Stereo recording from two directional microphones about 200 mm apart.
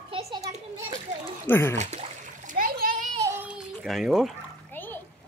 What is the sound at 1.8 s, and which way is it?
Splash, 35° right (ahead or behind).